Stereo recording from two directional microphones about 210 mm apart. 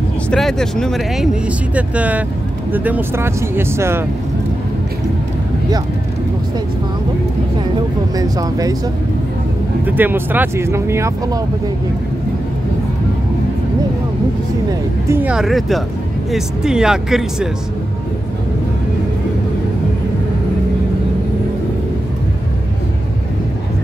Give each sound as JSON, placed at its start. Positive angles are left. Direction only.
{"t": 0.3, "sound": "speech", "side_deg": 0}
{"t": 8.2, "sound": "speech", "side_deg": -15}
{"t": 9.8, "sound": "speech", "side_deg": -10}
{"t": 14.7, "sound": "speech", "side_deg": -10}